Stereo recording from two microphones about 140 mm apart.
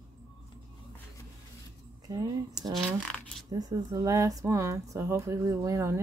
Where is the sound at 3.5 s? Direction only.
25° right (ahead or behind).